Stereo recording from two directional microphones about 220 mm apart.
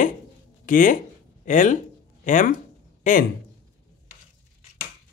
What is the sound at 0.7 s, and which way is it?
Speech, 35° left (ahead or behind).